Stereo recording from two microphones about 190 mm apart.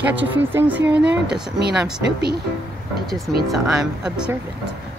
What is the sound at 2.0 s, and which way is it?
Speech, 60° right (ahead or behind).